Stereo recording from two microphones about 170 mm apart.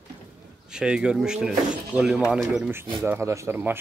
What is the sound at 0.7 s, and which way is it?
Speech, 5° right (ahead or behind).